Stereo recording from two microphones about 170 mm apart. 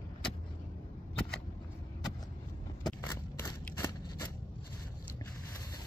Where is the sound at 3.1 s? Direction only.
20° left (ahead or behind).